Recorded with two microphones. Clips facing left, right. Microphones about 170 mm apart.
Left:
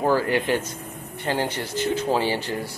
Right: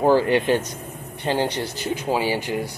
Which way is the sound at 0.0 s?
25° right (ahead or behind).